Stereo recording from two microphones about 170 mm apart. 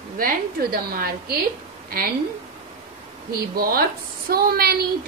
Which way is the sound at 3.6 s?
60° right (ahead or behind).